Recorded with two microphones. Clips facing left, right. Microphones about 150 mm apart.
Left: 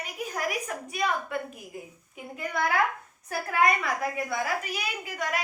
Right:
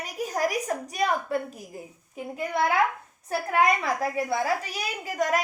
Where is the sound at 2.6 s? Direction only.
25° right (ahead or behind).